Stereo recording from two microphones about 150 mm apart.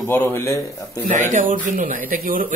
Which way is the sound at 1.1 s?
55° right (ahead or behind).